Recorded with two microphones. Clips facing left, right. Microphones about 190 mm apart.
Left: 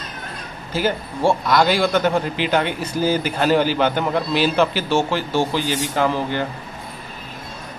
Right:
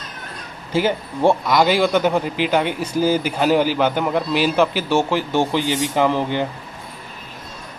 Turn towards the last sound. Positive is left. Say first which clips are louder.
# right 2 dB
turn(degrees=-20)  # may be behind; listen again after turning